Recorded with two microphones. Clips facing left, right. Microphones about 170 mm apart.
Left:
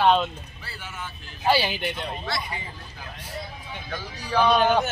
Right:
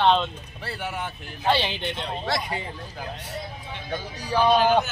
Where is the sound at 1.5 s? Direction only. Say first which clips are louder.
Left 1 dB; 5° left (ahead or behind).